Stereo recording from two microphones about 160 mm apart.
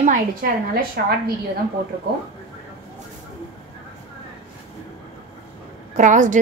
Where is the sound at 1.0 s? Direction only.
75° right (ahead or behind).